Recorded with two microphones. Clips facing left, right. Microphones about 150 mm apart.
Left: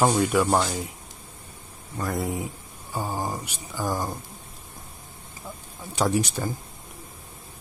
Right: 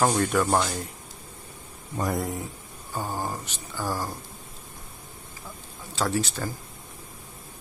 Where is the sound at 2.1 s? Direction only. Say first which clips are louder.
Left 2 dB; 10° left (ahead or behind).